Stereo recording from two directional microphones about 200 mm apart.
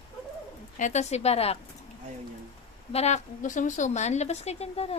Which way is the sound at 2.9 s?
35° left (ahead or behind).